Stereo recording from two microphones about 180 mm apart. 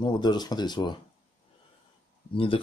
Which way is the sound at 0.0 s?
25° left (ahead or behind).